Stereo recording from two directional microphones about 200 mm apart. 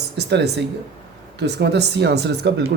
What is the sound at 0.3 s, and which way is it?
Speech, 60° right (ahead or behind).